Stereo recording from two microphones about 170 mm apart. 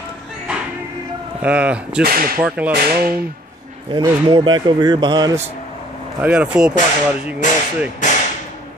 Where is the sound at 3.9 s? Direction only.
25° right (ahead or behind).